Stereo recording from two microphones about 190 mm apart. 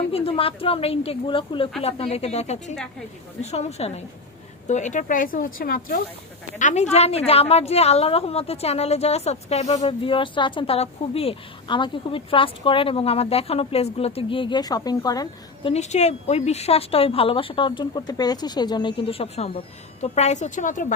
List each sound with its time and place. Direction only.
0.1 s a woman's voice: 30° left (ahead or behind)
15.7 s a woman's voice: 35° left (ahead or behind)